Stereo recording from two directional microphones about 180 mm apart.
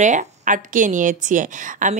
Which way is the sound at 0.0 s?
40° right (ahead or behind).